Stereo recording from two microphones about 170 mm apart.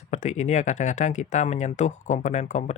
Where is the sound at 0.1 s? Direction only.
45° left (ahead or behind).